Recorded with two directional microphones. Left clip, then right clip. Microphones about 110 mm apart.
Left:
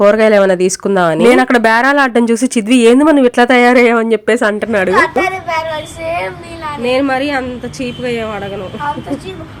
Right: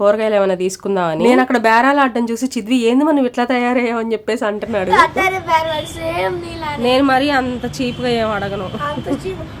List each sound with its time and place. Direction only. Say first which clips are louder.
0.0 s speech: left 6 dB; 45° left (ahead or behind)
4.9 s a child's voice: right 1 dB; 30° right (ahead or behind)
6.8 s a woman's voice: even; 15° right (ahead or behind)